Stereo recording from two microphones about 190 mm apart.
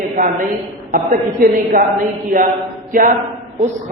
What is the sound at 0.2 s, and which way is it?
A woman's voice, 40° right (ahead or behind).